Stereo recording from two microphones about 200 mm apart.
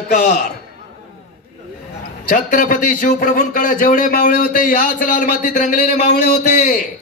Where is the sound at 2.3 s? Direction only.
40° left (ahead or behind).